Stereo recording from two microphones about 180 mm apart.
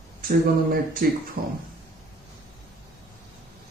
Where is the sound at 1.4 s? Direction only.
55° right (ahead or behind).